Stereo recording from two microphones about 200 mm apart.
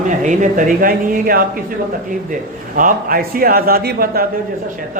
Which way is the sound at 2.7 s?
45° right (ahead or behind).